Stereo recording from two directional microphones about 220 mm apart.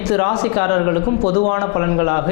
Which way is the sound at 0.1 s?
25° left (ahead or behind).